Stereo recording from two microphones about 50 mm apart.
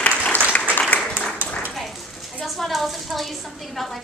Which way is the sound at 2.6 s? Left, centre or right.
Centre.